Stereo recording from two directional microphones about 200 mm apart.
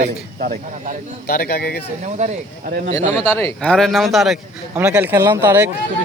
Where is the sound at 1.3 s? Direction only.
50° left (ahead or behind).